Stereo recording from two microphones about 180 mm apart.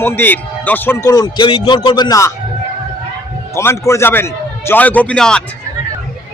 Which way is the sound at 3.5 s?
15° left (ahead or behind).